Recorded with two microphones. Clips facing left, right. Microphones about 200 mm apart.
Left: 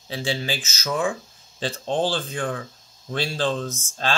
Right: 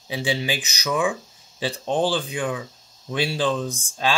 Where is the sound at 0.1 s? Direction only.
15° right (ahead or behind).